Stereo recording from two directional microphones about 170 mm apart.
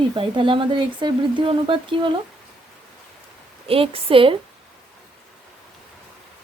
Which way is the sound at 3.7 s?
35° right (ahead or behind).